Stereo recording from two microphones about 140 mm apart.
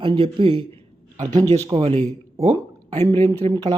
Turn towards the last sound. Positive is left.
turn(degrees=-30)  # may be behind; listen again after turning